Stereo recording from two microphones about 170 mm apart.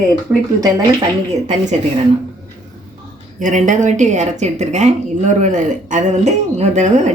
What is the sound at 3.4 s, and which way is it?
A woman's voice, 45° right (ahead or behind).